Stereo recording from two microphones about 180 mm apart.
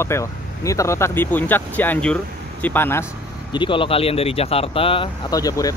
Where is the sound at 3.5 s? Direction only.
30° left (ahead or behind).